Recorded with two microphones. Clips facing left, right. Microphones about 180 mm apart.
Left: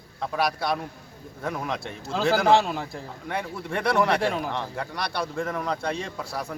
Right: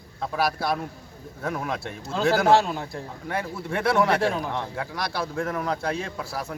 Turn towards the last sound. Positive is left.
turn(degrees=-5)  # may be behind; listen again after turning